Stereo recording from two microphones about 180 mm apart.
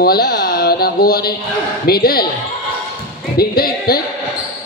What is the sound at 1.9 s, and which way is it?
Speech, 55° left (ahead or behind).